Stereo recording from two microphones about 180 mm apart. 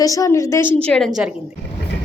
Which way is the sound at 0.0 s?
20° left (ahead or behind).